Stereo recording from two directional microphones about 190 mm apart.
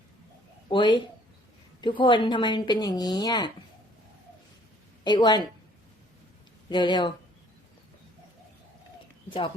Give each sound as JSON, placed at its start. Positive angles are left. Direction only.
{"t": 0.7, "sound": "a woman's voice", "side_deg": 25}
{"t": 5.0, "sound": "a woman's voice", "side_deg": 25}
{"t": 6.7, "sound": "a woman's voice", "side_deg": 25}